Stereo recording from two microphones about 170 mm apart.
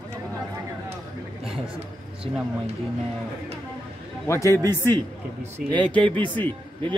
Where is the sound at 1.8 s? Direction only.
35° right (ahead or behind).